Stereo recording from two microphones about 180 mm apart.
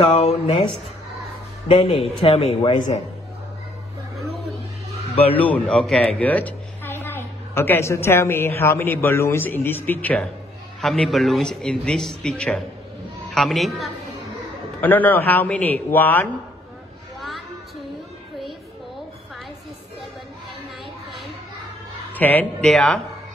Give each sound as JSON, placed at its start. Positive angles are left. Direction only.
{"t": 0.1, "sound": "speech", "side_deg": 35}
{"t": 1.7, "sound": "speech", "side_deg": 30}
{"t": 5.3, "sound": "a woman's voice", "side_deg": 10}
{"t": 22.1, "sound": "a man's voice", "side_deg": 10}